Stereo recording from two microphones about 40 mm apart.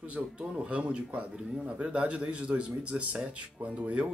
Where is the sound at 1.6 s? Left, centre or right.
Right.